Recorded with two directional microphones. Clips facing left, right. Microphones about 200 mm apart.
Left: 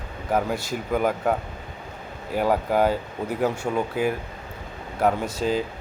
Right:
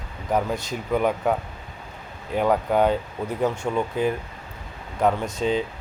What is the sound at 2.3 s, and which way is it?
Speech, 5° left (ahead or behind).